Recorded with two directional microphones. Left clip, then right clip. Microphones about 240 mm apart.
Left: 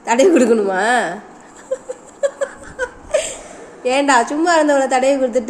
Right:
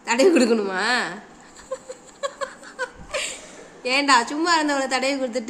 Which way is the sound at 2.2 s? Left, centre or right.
Right.